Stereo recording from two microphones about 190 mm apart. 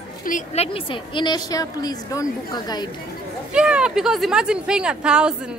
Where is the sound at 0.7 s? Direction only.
25° left (ahead or behind).